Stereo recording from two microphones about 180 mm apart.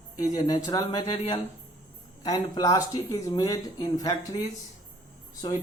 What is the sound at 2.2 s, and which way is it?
Speech, 20° left (ahead or behind).